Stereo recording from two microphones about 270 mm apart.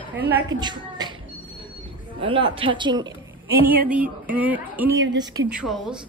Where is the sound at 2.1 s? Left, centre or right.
Centre.